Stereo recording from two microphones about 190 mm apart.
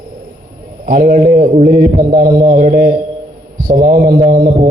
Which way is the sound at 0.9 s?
50° right (ahead or behind).